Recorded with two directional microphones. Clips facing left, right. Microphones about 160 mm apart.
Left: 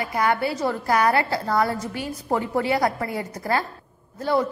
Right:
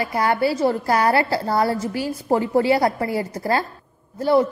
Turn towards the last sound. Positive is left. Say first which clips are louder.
# right 5 dB
turn(degrees=-30)  # may be behind; listen again after turning